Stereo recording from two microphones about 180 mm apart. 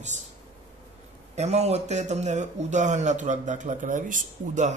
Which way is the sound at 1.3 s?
35° right (ahead or behind).